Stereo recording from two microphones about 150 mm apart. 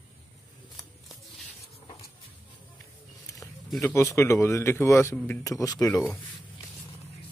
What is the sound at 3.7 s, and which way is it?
Speech, 5° left (ahead or behind).